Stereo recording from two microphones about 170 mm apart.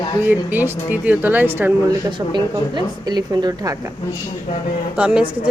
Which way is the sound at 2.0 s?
25° right (ahead or behind).